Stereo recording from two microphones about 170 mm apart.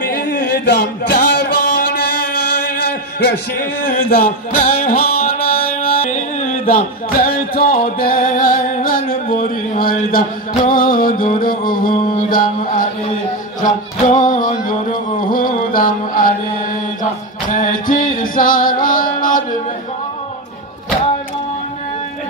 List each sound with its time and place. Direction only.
0.1 s a sound: 60° left (ahead or behind)
3.2 s a man's voice: 80° left
4.1 s music: 55° left (ahead or behind)
17.6 s music: 50° left (ahead or behind)